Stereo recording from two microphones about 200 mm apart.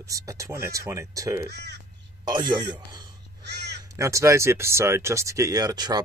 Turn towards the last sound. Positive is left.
turn(degrees=-20)  # may be behind; listen again after turning